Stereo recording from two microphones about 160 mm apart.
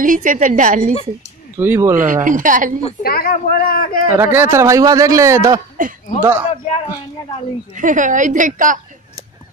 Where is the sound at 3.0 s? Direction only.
65° left (ahead or behind).